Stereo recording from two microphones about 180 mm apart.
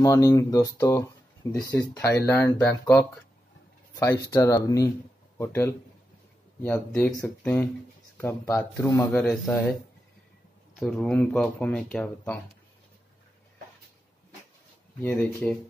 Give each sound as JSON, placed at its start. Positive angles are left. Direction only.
{"t": 0.0, "sound": "speech", "side_deg": 15}
{"t": 9.1, "sound": "speech", "side_deg": 5}
{"t": 10.8, "sound": "speech", "side_deg": 0}
{"t": 15.0, "sound": "speech", "side_deg": 10}